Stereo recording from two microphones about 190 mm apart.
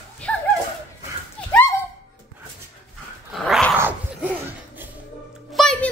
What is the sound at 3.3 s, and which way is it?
Dog, centre (ahead or behind).